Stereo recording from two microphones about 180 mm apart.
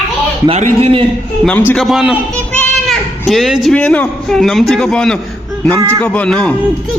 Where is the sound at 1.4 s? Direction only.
5° left (ahead or behind).